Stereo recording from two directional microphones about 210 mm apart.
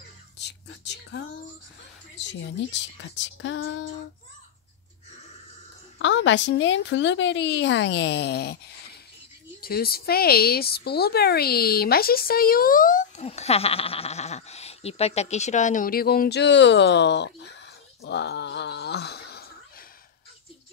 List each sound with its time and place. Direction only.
0.4 s a sound: 55° left (ahead or behind)
2.1 s a woman's voice: 60° left (ahead or behind)
5.9 s a woman's voice: 60° left (ahead or behind)